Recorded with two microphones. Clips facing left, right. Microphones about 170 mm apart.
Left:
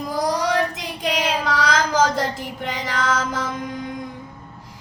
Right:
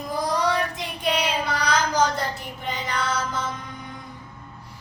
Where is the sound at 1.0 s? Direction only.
90° left.